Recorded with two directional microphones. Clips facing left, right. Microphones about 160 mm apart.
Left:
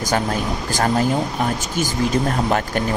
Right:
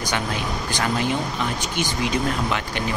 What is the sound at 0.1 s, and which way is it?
Speech, 40° left (ahead or behind).